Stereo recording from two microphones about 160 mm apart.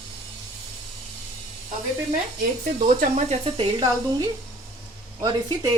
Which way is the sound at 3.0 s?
45° right (ahead or behind).